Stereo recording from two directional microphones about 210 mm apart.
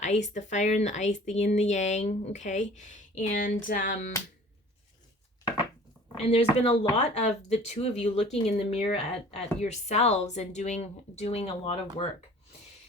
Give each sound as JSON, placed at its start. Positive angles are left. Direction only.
{"t": 0.0, "sound": "speech", "side_deg": 35}
{"t": 6.2, "sound": "speech", "side_deg": 30}